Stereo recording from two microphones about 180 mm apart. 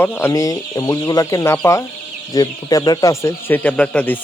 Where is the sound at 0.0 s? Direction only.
15° left (ahead or behind).